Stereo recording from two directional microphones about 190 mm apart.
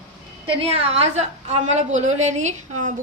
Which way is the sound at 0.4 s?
30° right (ahead or behind).